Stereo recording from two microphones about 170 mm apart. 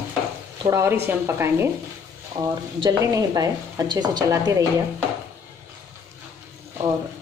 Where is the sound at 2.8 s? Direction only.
20° right (ahead or behind).